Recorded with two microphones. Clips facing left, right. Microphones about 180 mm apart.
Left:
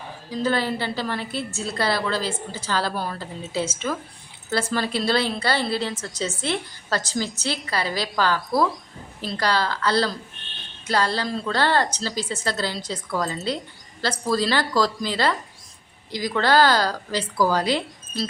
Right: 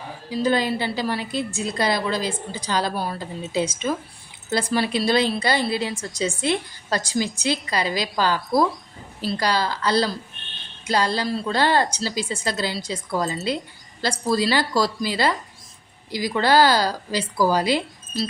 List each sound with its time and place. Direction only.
0.3 s a woman's voice: 10° right (ahead or behind)